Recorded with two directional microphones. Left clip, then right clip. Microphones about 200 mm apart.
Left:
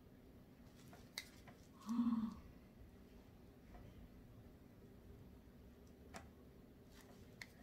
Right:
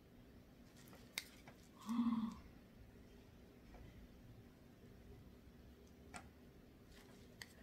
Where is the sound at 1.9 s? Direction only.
15° right (ahead or behind).